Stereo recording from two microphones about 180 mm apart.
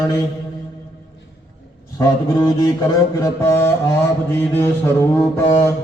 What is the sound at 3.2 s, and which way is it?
Mantra, 15° left (ahead or behind).